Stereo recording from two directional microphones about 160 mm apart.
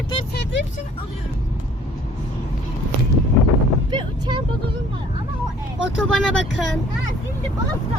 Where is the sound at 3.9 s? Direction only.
30° right (ahead or behind).